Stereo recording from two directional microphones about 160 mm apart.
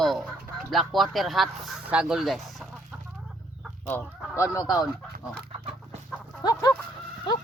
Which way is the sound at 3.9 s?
15° left (ahead or behind).